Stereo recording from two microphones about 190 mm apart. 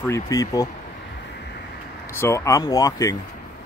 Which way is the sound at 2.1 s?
15° left (ahead or behind).